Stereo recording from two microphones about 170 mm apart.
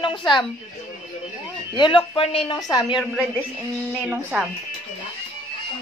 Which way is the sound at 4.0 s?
5° right (ahead or behind).